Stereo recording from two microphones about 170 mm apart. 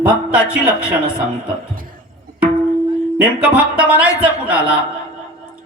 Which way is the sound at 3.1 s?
5° right (ahead or behind).